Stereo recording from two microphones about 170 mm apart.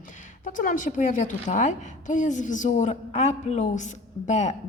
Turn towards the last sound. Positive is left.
turn(degrees=45)  # may be behind; listen again after turning